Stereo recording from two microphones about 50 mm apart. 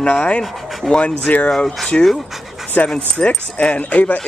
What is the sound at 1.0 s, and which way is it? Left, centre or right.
Speech, left.